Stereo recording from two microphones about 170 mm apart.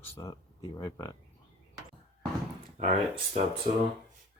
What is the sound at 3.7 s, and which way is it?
Speech, 55° right (ahead or behind).